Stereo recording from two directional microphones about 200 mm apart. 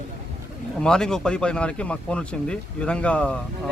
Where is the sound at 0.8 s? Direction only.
5° left (ahead or behind).